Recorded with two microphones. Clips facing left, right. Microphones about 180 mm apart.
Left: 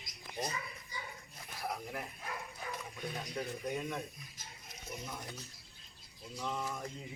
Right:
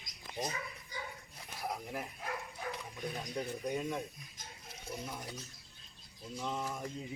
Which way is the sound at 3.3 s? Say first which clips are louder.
Right 2 dB; 15° right (ahead or behind).